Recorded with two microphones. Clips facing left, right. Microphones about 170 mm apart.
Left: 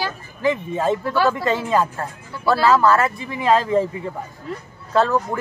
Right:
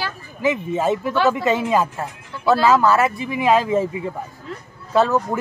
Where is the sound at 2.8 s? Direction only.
5° right (ahead or behind).